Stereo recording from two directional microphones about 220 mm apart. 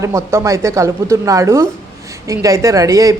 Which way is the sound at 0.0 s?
15° right (ahead or behind).